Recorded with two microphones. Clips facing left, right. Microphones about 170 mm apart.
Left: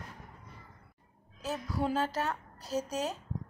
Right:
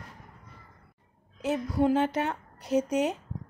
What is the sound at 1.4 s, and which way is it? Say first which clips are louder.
A woman's voice: right 8 dB; 20° right (ahead or behind).